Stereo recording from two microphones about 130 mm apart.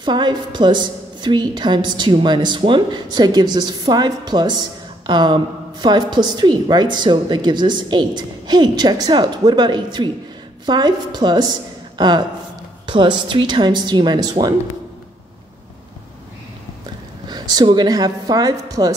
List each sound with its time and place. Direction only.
0.0 s a woman's voice: 35° right (ahead or behind)
17.3 s a woman's voice: 30° right (ahead or behind)